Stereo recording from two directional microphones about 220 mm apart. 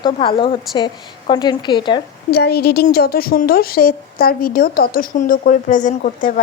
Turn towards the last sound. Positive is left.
turn(degrees=35)  # may be behind; listen again after turning